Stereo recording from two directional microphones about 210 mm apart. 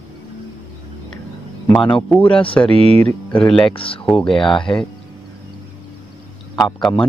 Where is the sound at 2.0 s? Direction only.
5° left (ahead or behind).